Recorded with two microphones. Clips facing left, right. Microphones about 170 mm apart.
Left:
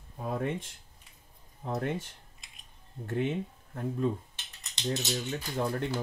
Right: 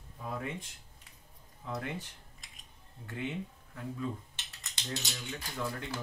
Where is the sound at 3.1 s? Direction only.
45° left (ahead or behind).